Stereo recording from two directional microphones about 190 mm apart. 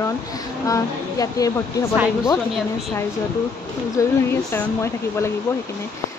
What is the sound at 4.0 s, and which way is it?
Speech, 15° left (ahead or behind).